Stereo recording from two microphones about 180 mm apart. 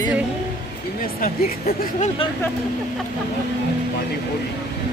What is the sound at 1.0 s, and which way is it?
Speech, 55° left (ahead or behind).